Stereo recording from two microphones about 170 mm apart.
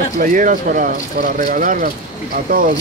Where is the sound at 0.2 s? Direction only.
50° right (ahead or behind).